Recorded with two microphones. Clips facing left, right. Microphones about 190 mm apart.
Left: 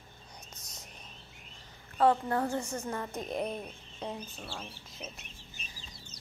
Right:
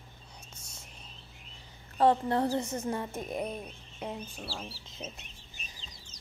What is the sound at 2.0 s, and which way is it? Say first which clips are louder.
Speech: right 2 dB; 25° right (ahead or behind).